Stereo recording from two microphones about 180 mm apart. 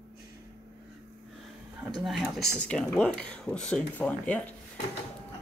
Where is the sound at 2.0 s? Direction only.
Centre (ahead or behind).